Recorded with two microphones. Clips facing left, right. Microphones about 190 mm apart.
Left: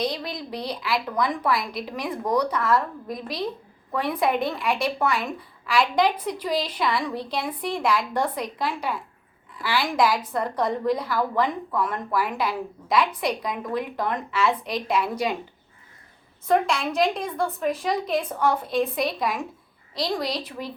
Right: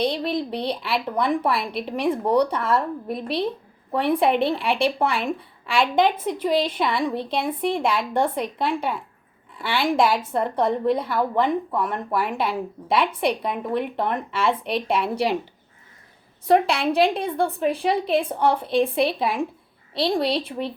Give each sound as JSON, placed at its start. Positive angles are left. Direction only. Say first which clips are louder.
{"t": 0.6, "sound": "speech", "louder": "right 2 dB", "side_deg": -30}
{"t": 3.1, "sound": "speech", "louder": "right 4 dB", "side_deg": -60}
{"t": 3.9, "sound": "speech", "louder": "right 4 dB", "side_deg": -30}
{"t": 16.5, "sound": "a woman's voice", "louder": "right 3 dB", "side_deg": -35}